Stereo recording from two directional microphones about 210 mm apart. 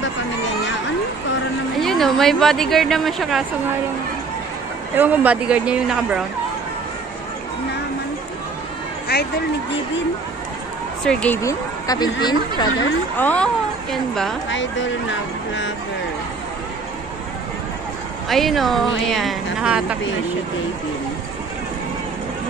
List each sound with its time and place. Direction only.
1.8 s a woman's voice: centre (ahead or behind)
4.9 s a woman's voice: 10° right (ahead or behind)
9.1 s speech: 50° left (ahead or behind)
11.1 s speech: 5° left (ahead or behind)
13.2 s speech: 5° left (ahead or behind)
14.5 s speech: 60° left (ahead or behind)
18.3 s a woman's voice: centre (ahead or behind)